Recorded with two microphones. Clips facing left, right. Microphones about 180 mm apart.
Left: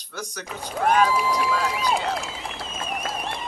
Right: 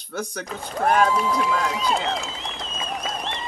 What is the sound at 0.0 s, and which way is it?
Speech, 50° right (ahead or behind).